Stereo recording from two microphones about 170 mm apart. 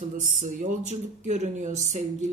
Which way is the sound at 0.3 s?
45° right (ahead or behind).